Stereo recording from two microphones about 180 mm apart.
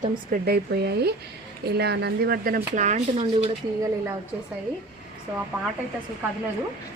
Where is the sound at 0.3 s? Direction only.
60° right (ahead or behind); by 3.5 s 35° right (ahead or behind).